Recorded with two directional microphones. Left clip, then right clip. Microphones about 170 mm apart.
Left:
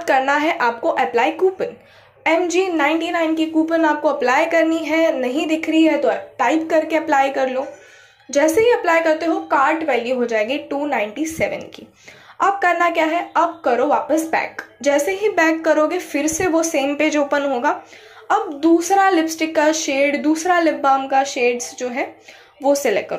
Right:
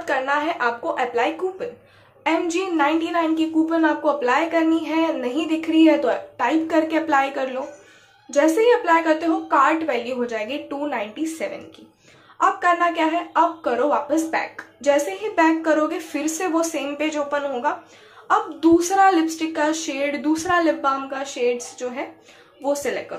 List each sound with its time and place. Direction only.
0.0 s a woman's voice: 25° left (ahead or behind)
2.2 s a woman's voice: 10° left (ahead or behind)
18.6 s a woman's voice: 5° left (ahead or behind)
18.9 s a woman's voice: 20° left (ahead or behind)